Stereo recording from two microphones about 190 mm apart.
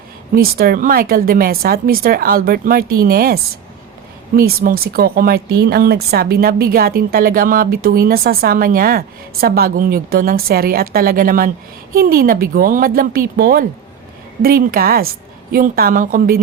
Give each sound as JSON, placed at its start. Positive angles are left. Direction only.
{"t": 0.3, "sound": "speech", "side_deg": -50}